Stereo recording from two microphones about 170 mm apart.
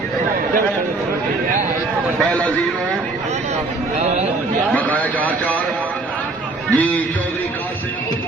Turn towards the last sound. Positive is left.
turn(degrees=10)  # may be behind; listen again after turning